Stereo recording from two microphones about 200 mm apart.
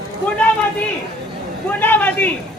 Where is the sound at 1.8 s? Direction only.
10° left (ahead or behind).